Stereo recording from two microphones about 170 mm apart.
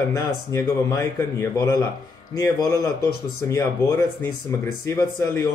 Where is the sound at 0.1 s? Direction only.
15° left (ahead or behind).